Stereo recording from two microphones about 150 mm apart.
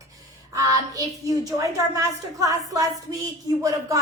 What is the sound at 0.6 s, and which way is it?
A woman's voice, 25° right (ahead or behind).